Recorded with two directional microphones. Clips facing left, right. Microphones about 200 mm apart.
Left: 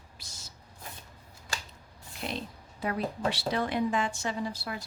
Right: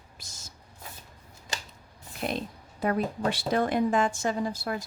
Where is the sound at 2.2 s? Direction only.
50° right (ahead or behind).